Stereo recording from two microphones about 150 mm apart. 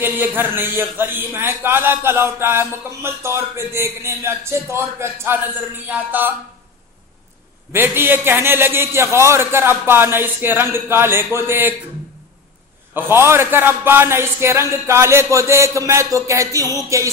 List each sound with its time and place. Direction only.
0.0 s a man's voice: 15° right (ahead or behind)
7.7 s a man's voice: 15° right (ahead or behind)
12.9 s a man's voice: 15° right (ahead or behind)